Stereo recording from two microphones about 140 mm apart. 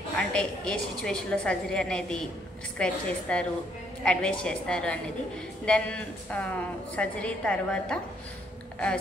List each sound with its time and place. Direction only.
0.3 s a woman's voice: 5° left (ahead or behind)